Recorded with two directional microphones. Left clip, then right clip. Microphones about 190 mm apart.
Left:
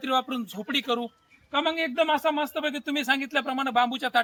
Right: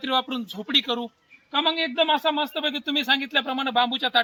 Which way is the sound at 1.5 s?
5° left (ahead or behind).